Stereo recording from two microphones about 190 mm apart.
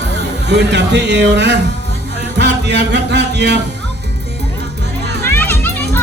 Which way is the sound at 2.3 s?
65° right (ahead or behind).